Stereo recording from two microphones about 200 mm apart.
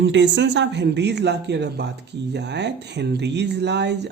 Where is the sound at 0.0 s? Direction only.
65° right (ahead or behind).